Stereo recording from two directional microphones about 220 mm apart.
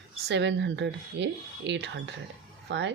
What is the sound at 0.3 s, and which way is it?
Speech, 55° right (ahead or behind).